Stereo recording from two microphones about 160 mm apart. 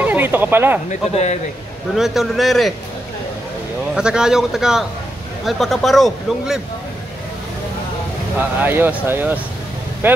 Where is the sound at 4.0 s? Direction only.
5° right (ahead or behind).